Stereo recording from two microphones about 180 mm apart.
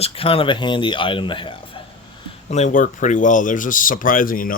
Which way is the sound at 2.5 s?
45° left (ahead or behind).